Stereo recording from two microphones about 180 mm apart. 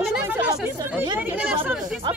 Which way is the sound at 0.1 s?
5° right (ahead or behind).